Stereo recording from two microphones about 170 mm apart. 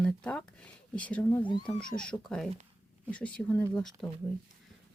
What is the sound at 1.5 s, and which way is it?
Speech, 25° left (ahead or behind).